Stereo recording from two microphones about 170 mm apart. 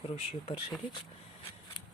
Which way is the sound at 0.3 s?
30° left (ahead or behind).